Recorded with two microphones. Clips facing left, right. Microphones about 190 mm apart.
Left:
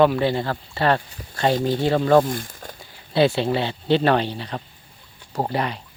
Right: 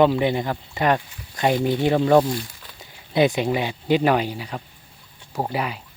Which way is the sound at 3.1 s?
15° right (ahead or behind).